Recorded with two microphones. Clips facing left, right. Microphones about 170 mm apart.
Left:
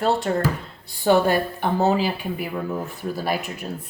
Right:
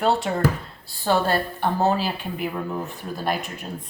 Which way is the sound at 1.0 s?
15° left (ahead or behind).